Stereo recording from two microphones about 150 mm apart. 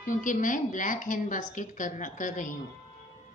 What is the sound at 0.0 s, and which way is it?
A woman's voice, 60° left (ahead or behind).